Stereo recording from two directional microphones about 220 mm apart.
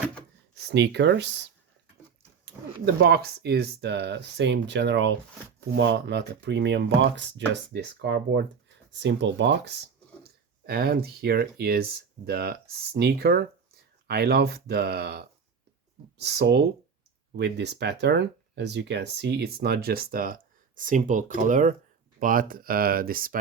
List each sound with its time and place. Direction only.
0.5 s speech: 50° right (ahead or behind)
2.4 s speech: 45° right (ahead or behind)